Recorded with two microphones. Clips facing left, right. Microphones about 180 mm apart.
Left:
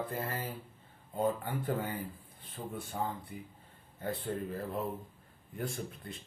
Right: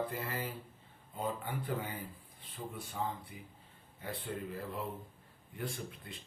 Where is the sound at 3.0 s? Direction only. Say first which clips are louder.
Left 1 dB; 55° left (ahead or behind).